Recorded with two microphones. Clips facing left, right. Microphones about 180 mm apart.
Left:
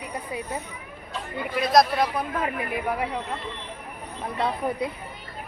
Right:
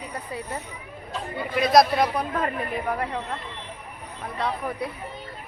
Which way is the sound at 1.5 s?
Centre (ahead or behind).